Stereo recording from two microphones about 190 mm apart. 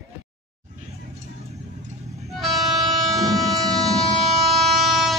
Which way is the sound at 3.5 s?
20° right (ahead or behind).